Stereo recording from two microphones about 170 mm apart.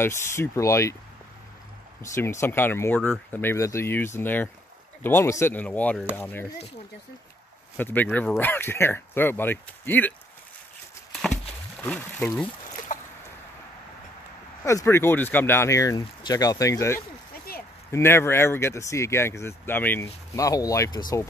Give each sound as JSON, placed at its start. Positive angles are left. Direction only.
{"t": 0.0, "sound": "speech", "side_deg": 15}
{"t": 2.1, "sound": "speech", "side_deg": 15}
{"t": 7.7, "sound": "speech", "side_deg": 10}
{"t": 11.8, "sound": "speech", "side_deg": 10}
{"t": 12.9, "sound": "a sound", "side_deg": 50}
{"t": 14.6, "sound": "speech", "side_deg": 15}